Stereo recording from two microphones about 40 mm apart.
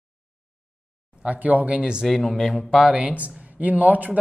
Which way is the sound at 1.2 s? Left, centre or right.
Right.